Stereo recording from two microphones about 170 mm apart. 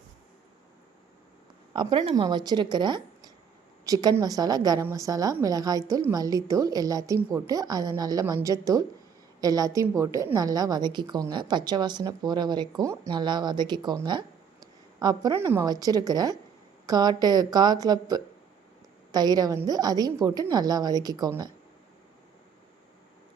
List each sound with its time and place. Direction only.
1.7 s a woman's voice: 30° right (ahead or behind)